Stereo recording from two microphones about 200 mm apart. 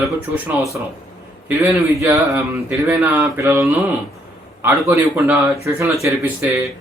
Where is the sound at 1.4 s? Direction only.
10° right (ahead or behind).